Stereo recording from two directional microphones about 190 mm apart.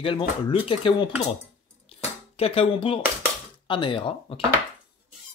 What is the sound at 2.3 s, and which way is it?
Speech, 30° left (ahead or behind).